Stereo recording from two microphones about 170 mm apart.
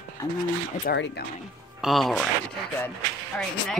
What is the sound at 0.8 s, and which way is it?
Speech, 80° left.